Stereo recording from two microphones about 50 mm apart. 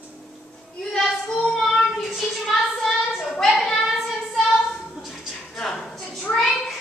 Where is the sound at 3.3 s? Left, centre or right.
Centre.